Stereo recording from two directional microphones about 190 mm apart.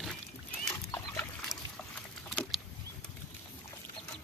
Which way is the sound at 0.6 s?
15° left (ahead or behind).